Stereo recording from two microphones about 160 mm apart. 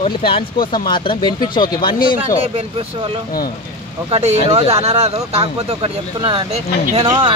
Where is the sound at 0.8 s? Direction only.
30° left (ahead or behind).